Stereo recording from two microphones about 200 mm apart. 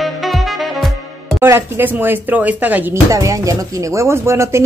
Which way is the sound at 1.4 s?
10° right (ahead or behind).